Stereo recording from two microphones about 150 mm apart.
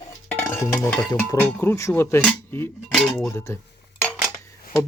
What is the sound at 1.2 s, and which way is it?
Speech, 15° left (ahead or behind).